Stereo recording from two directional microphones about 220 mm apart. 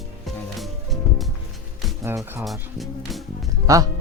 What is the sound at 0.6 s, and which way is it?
Music, centre (ahead or behind).